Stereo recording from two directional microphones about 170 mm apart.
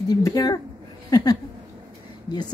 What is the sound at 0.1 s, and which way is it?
Speech, 20° left (ahead or behind).